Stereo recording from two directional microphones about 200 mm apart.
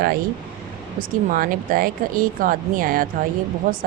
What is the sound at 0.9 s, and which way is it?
Speech, 45° right (ahead or behind).